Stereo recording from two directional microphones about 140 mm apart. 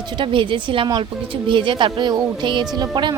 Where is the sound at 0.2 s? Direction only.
35° right (ahead or behind).